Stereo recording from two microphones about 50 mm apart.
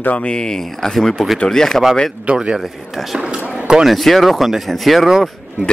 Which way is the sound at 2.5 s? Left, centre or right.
Centre.